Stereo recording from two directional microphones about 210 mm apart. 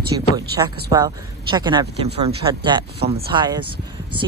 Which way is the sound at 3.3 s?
20° right (ahead or behind).